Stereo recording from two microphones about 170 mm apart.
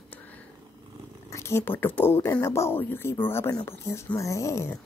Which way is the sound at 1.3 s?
15° left (ahead or behind).